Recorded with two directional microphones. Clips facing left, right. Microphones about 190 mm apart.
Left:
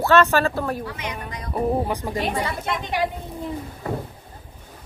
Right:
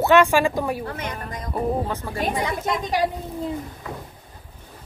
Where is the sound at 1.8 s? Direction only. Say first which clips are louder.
Left 3 dB; 15° left (ahead or behind).